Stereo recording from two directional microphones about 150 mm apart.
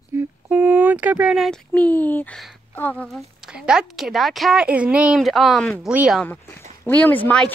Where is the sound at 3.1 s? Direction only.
5° right (ahead or behind).